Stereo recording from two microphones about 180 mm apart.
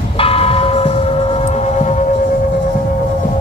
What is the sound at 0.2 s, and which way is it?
Tubular bells, 30° left (ahead or behind).